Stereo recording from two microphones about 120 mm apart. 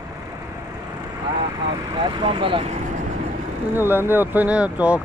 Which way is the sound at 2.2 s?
45° right (ahead or behind).